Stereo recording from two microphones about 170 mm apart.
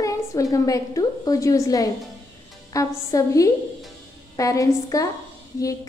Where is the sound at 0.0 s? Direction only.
20° left (ahead or behind).